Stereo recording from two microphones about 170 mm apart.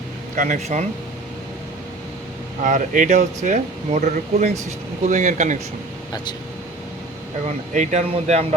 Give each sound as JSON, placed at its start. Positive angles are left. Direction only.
{"t": 0.3, "sound": "speech", "side_deg": -45}
{"t": 2.6, "sound": "speech", "side_deg": -50}
{"t": 7.4, "sound": "speech", "side_deg": -45}